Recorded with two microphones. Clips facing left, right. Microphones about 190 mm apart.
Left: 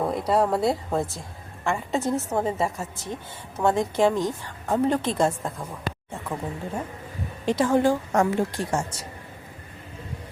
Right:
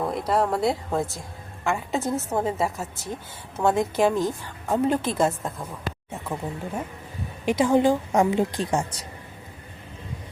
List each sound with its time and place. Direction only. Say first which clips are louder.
0.1 s a woman's voice: left 1 dB; 5° left (ahead or behind); by 9.0 s 15° right (ahead or behind)